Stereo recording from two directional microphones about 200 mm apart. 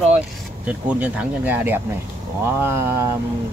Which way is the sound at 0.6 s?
5° right (ahead or behind).